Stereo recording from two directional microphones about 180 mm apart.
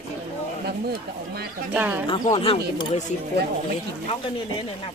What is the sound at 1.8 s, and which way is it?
Speech, 10° right (ahead or behind).